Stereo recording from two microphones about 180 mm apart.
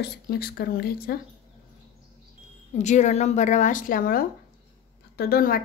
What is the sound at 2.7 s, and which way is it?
A woman's voice, 40° left (ahead or behind).